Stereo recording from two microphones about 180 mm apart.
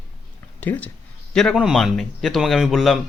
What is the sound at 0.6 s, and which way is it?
A man's voice, 10° left (ahead or behind).